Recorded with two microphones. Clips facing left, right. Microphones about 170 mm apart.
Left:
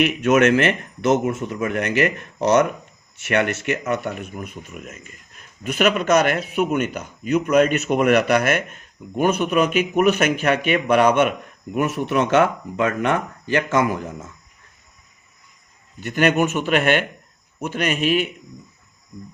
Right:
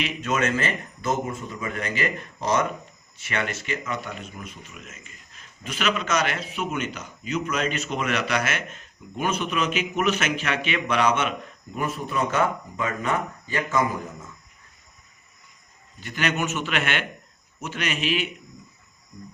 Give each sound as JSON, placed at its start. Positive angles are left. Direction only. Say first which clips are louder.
{"t": 0.0, "sound": "speech", "louder": "left 9 dB", "side_deg": 65}
{"t": 16.0, "sound": "a man's voice", "louder": "left 8 dB", "side_deg": 55}